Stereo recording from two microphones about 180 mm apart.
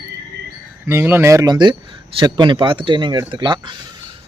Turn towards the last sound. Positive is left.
turn(degrees=-25)  # may be behind; listen again after turning